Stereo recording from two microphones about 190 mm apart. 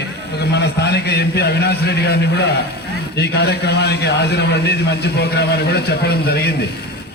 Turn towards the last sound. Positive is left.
turn(degrees=55)  # may be behind; listen again after turning